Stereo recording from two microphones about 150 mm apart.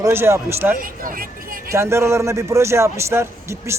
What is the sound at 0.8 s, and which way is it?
Speech, 70° right (ahead or behind).